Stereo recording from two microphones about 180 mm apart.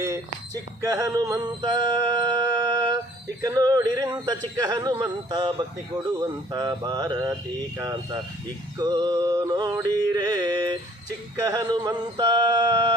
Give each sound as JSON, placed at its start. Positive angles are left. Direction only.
{"t": 0.0, "sound": "speech", "side_deg": -15}
{"t": 3.4, "sound": "music", "side_deg": -20}